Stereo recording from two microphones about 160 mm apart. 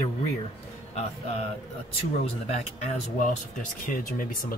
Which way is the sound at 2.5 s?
50° left (ahead or behind).